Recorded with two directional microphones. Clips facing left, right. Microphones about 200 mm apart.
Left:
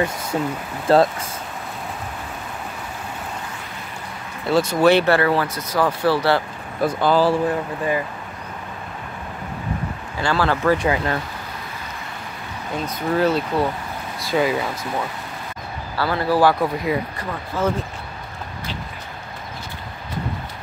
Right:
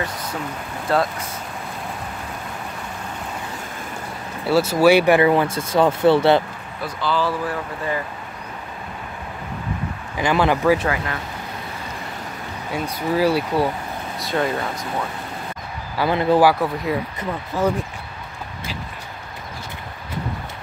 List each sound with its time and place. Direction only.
0.9 s speech: 30° left (ahead or behind)
4.5 s speech: 5° right (ahead or behind); by 6.4 s 20° right (ahead or behind)
6.8 s speech: 50° left (ahead or behind)
7.2 s speech: 20° left (ahead or behind)
10.1 s speech: 20° right (ahead or behind)
12.7 s speech: 10° right (ahead or behind)
14.2 s speech: 5° left (ahead or behind)
16.0 s speech: 20° right (ahead or behind)
16.4 s speech: centre (ahead or behind)
17.2 s speech: 15° right (ahead or behind)